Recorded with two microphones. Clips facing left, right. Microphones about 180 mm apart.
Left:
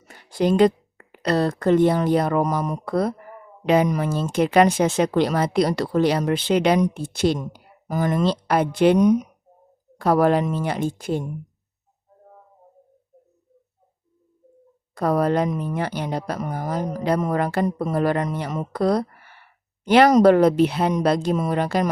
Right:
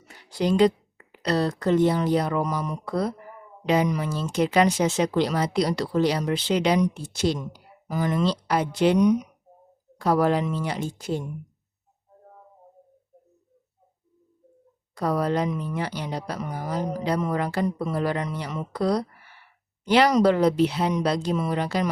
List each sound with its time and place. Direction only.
0.0 s speech: 50° left (ahead or behind)
14.9 s speech: 55° left (ahead or behind)